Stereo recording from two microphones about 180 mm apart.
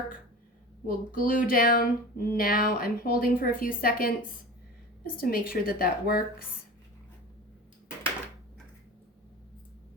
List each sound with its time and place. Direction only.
0.9 s a woman's voice: 50° left (ahead or behind)
5.1 s a woman's voice: 55° left (ahead or behind)